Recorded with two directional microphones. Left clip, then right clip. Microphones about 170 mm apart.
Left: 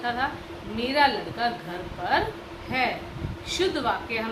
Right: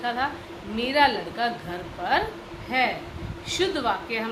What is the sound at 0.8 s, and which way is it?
A woman's voice, 50° right (ahead or behind).